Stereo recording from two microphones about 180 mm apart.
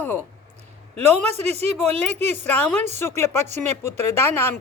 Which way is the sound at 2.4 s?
10° left (ahead or behind).